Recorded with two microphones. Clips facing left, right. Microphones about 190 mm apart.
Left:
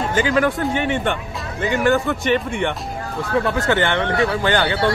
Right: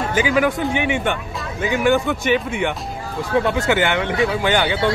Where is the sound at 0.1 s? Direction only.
5° right (ahead or behind).